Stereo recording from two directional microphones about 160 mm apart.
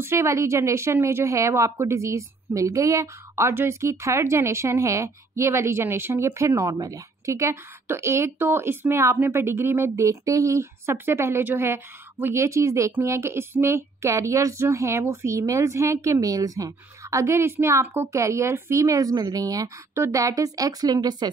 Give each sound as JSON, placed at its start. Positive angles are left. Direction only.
{"t": 0.0, "sound": "a woman's voice", "side_deg": -15}